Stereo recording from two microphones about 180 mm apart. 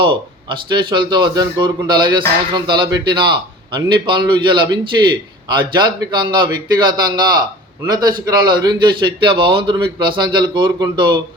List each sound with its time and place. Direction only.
0.0 s speech: 30° right (ahead or behind)